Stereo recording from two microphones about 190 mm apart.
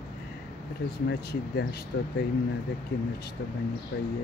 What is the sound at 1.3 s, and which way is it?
Speech, 55° left (ahead or behind).